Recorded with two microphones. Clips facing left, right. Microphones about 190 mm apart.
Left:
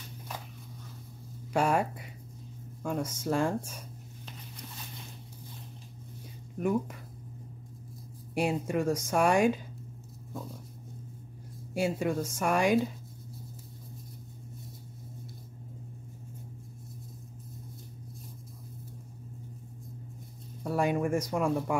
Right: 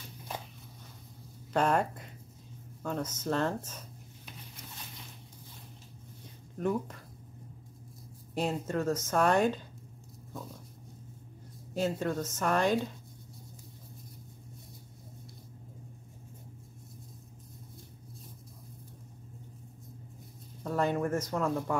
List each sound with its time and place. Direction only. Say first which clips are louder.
1.5 s speech: left 1 dB; 10° left (ahead or behind)
6.6 s speech: left 2 dB; 10° left (ahead or behind)
8.4 s speech: left 3 dB; 10° left (ahead or behind)
11.7 s speech: left 2 dB; 10° left (ahead or behind)
20.6 s speech: left 2 dB; 10° left (ahead or behind)